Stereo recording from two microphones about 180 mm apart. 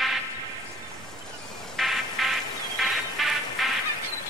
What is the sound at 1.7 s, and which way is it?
Music, centre (ahead or behind).